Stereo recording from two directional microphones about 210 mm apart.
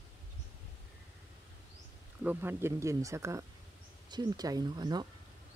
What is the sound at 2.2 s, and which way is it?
Speech, 10° right (ahead or behind).